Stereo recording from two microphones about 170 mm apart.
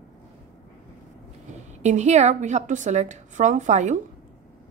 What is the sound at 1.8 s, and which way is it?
A woman's voice, 45° right (ahead or behind).